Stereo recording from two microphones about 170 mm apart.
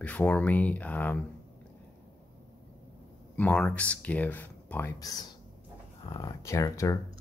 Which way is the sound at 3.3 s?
5° left (ahead or behind).